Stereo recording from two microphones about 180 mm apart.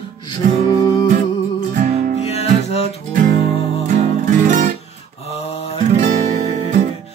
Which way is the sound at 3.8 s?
45° right (ahead or behind).